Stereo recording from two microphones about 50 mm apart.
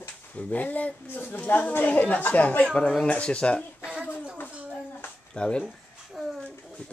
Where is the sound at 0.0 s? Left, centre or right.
Left.